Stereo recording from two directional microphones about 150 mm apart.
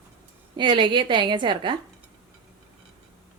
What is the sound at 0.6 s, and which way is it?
A woman's voice, 30° right (ahead or behind).